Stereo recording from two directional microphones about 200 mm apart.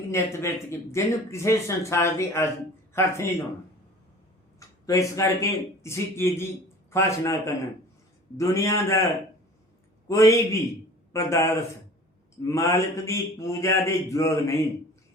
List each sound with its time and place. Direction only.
0.1 s speech: 15° left (ahead or behind)
4.9 s speech: 15° left (ahead or behind)
10.1 s speech: 15° left (ahead or behind)